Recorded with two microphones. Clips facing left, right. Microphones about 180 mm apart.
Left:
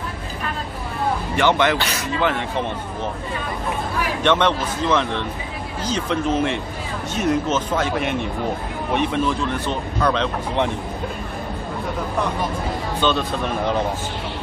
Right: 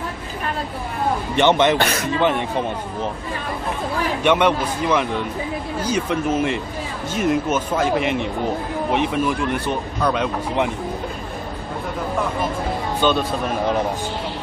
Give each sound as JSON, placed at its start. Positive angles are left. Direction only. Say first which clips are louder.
{"t": 1.3, "sound": "speech", "louder": "right 3 dB", "side_deg": -20}
{"t": 1.8, "sound": "speech", "louder": "right 5 dB", "side_deg": -50}
{"t": 2.1, "sound": "speech", "louder": "right 2 dB", "side_deg": -20}
{"t": 4.2, "sound": "speech", "louder": "right 1 dB", "side_deg": -10}
{"t": 13.0, "sound": "speech", "louder": "right 2 dB", "side_deg": -10}